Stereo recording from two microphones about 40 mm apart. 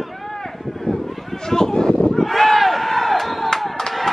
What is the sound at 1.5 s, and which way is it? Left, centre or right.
Speech, centre.